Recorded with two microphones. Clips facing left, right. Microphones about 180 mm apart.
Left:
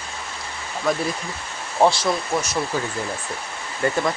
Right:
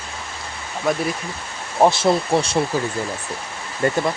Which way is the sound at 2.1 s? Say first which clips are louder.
Right 5 dB; 30° right (ahead or behind).